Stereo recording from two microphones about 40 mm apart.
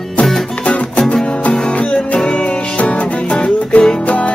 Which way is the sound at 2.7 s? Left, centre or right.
Left.